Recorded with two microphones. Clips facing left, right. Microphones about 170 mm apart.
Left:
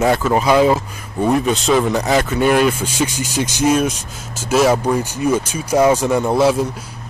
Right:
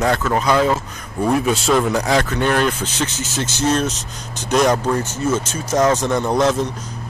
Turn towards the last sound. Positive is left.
turn(degrees=10)  # may be behind; listen again after turning